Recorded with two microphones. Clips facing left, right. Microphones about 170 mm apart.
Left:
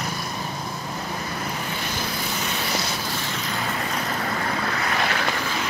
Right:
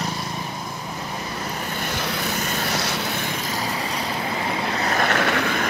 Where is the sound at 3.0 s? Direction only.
60° right (ahead or behind).